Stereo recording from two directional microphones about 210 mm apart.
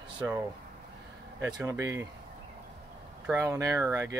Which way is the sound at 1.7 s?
15° right (ahead or behind).